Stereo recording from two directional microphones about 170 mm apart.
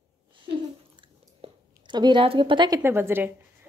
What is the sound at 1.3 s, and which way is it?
A woman's voice, 25° right (ahead or behind).